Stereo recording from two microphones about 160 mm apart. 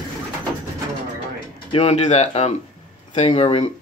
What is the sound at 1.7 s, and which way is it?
Speech, 40° left (ahead or behind).